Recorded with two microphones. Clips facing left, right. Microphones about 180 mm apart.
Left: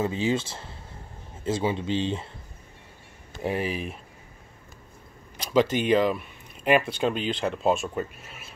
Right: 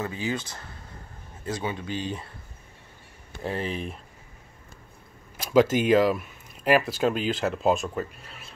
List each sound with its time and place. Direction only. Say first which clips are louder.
0.0 s speech: left 5 dB; 25° left (ahead or behind)
3.3 s speech: left 2 dB; 15° left (ahead or behind)
5.4 s a sound: right 2 dB; 5° right (ahead or behind)
5.8 s speech: right 2 dB; 5° right (ahead or behind)